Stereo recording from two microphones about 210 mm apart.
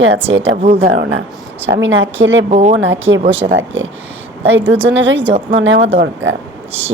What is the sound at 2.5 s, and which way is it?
Speech, 35° right (ahead or behind).